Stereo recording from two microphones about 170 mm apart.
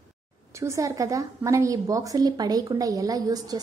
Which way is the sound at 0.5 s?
15° right (ahead or behind).